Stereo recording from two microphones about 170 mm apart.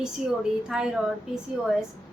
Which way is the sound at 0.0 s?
5° right (ahead or behind).